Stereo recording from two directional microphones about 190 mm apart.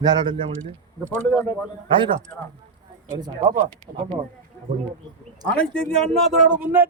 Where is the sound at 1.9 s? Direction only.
25° right (ahead or behind).